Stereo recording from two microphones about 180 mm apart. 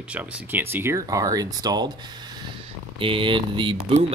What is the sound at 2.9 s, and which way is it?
Speech, 30° right (ahead or behind).